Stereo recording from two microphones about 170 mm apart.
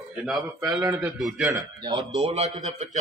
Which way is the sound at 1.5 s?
25° right (ahead or behind).